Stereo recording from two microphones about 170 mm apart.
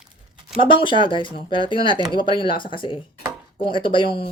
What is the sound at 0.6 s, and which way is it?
Speech, 30° left (ahead or behind).